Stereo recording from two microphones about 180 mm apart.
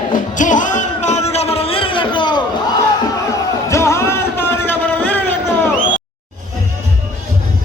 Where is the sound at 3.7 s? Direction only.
15° left (ahead or behind).